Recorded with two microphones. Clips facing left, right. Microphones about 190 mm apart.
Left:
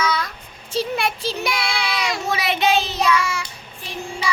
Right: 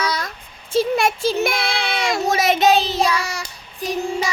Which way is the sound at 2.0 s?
50° right (ahead or behind).